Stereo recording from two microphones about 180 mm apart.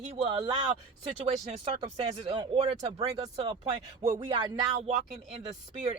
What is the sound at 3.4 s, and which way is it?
Speech, 35° right (ahead or behind).